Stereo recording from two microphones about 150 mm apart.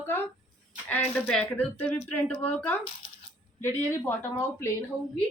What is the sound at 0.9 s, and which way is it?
Speech, 10° left (ahead or behind).